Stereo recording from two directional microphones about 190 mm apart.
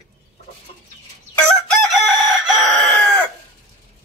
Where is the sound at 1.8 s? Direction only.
Centre (ahead or behind).